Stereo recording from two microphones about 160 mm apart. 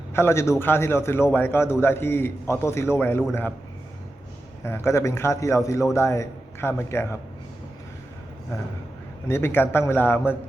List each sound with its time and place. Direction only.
0.1 s a man's voice: 15° left (ahead or behind)
4.6 s a man's voice: 15° left (ahead or behind)
9.2 s a man's voice: 15° left (ahead or behind)